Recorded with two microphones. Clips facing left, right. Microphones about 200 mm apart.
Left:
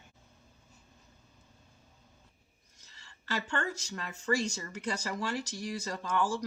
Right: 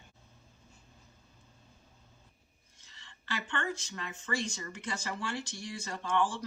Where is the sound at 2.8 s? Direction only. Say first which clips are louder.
Left 1 dB; 40° left (ahead or behind).